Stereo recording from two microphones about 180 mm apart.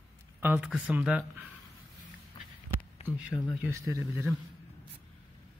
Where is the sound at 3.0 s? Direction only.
35° left (ahead or behind).